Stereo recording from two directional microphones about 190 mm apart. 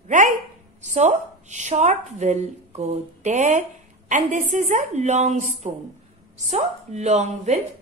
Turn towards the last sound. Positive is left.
turn(degrees=-35)  # may be behind; listen again after turning